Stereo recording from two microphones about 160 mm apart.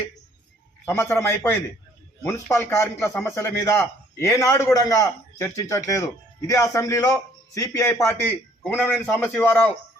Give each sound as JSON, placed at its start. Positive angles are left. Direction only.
{"t": 0.9, "sound": "a man's voice", "side_deg": 15}